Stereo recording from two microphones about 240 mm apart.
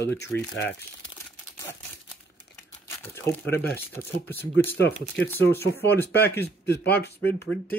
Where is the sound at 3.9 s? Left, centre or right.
Centre.